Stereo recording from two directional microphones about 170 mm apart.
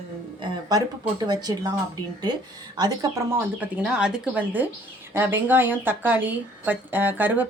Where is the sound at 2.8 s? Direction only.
20° right (ahead or behind).